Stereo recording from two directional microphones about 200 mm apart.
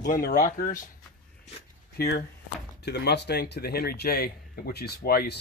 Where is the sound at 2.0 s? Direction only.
55° left (ahead or behind).